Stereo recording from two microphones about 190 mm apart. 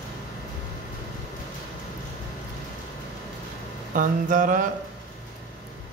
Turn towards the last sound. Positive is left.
turn(degrees=-45)  # may be behind; listen again after turning